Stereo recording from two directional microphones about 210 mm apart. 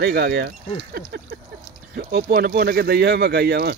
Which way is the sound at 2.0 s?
50° right (ahead or behind).